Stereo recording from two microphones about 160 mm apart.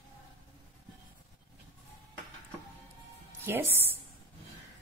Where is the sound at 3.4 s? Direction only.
15° right (ahead or behind).